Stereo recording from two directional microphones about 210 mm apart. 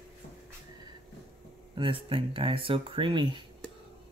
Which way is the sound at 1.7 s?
25° right (ahead or behind).